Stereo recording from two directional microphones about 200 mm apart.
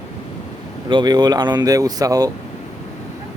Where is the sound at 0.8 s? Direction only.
20° right (ahead or behind).